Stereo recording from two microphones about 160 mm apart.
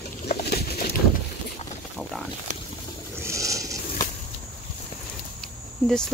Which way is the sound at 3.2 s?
20° right (ahead or behind).